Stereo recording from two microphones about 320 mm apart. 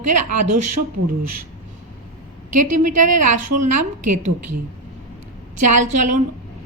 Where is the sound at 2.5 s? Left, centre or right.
Right.